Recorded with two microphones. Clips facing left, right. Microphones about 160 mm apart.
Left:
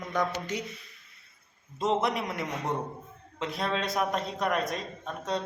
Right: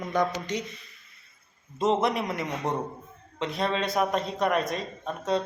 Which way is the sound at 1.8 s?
Centre (ahead or behind).